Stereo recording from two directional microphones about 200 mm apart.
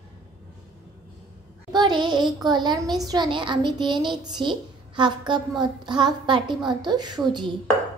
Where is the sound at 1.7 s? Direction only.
20° right (ahead or behind).